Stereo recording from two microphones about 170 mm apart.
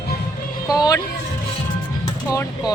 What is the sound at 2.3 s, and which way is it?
Speech, 20° left (ahead or behind).